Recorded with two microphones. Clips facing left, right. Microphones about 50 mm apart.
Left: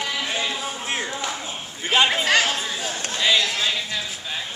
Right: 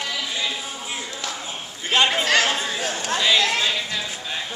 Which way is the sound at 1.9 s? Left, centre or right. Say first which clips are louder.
Even; centre.